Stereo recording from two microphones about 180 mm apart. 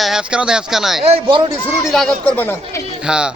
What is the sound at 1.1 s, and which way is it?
Speech, 25° right (ahead or behind).